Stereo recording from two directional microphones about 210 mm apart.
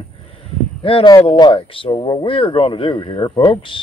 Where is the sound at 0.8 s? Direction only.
20° left (ahead or behind).